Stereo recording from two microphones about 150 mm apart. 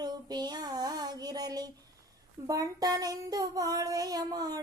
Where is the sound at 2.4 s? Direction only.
25° right (ahead or behind).